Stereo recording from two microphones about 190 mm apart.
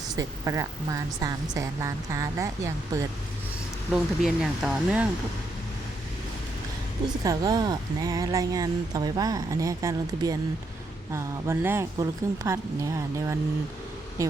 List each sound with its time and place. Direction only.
0.2 s a woman's voice: 15° right (ahead or behind)
3.9 s speech: 5° right (ahead or behind)
7.3 s a woman's voice: 20° right (ahead or behind)